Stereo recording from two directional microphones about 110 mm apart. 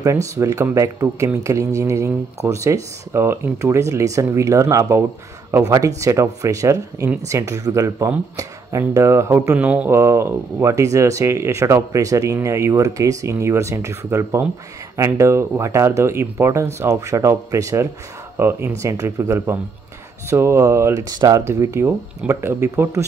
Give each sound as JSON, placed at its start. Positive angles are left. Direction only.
{"t": 0.0, "sound": "speech", "side_deg": -30}
{"t": 9.6, "sound": "speech", "side_deg": -10}
{"t": 9.8, "sound": "speech", "side_deg": -25}